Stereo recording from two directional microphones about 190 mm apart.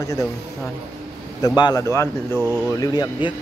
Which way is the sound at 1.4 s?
20° left (ahead or behind).